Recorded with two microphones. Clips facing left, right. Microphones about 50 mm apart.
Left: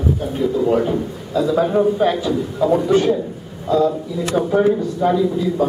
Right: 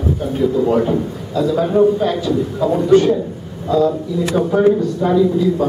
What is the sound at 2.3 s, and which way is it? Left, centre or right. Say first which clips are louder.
A man's voice: even; centre.